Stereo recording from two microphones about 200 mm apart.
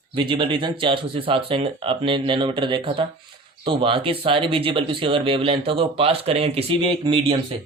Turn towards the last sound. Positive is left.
turn(degrees=-25)  # may be behind; listen again after turning